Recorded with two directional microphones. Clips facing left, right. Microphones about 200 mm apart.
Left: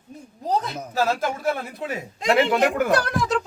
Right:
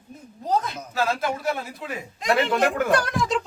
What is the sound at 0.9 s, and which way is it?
Speech, 45° left (ahead or behind).